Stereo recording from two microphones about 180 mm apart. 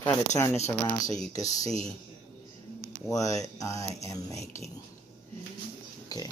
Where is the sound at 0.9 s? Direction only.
20° left (ahead or behind).